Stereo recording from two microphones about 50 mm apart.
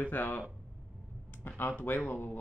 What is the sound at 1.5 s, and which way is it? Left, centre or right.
Speech, left.